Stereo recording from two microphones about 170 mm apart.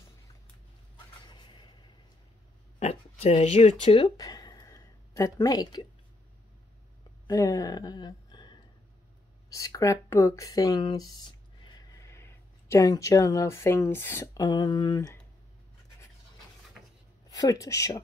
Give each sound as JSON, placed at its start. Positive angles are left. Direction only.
{"t": 1.2, "sound": "a sound", "side_deg": 25}
{"t": 2.8, "sound": "speech", "side_deg": 40}
{"t": 7.2, "sound": "speech", "side_deg": 20}
{"t": 17.3, "sound": "speech", "side_deg": 20}